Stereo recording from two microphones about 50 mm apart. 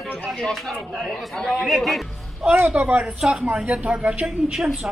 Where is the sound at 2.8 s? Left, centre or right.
Right.